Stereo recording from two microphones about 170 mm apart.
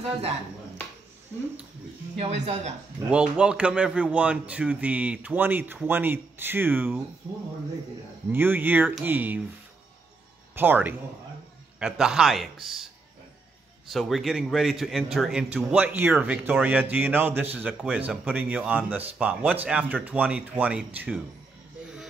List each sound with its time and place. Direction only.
2.1 s speech: 40° right (ahead or behind)
3.1 s a man's voice: 5° right (ahead or behind)
8.3 s a man's voice: 10° right (ahead or behind)
10.5 s a man's voice: 10° right (ahead or behind)
13.8 s a man's voice: centre (ahead or behind)